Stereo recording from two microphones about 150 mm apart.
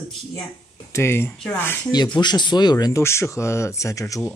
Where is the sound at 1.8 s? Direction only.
30° left (ahead or behind).